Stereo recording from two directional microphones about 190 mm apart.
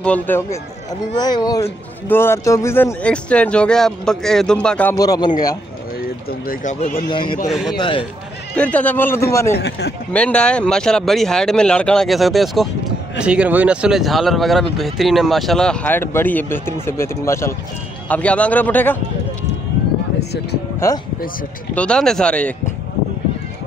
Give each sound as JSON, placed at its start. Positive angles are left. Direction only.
{"t": 0.0, "sound": "a man's voice", "side_deg": 10}
{"t": 4.9, "sound": "a man's voice", "side_deg": 20}
{"t": 6.4, "sound": "speech", "side_deg": 45}
{"t": 7.1, "sound": "a man's voice", "side_deg": 25}
{"t": 7.4, "sound": "speech", "side_deg": 0}
{"t": 7.7, "sound": "a man's voice", "side_deg": 25}
{"t": 8.5, "sound": "speech", "side_deg": 5}
{"t": 9.6, "sound": "speech", "side_deg": 60}
{"t": 10.1, "sound": "speech", "side_deg": 5}
{"t": 21.7, "sound": "speech", "side_deg": 5}